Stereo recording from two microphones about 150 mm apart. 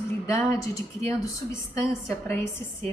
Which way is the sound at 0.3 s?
15° left (ahead or behind).